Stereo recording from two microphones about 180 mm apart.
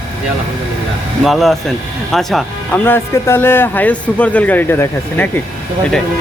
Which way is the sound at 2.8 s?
15° left (ahead or behind).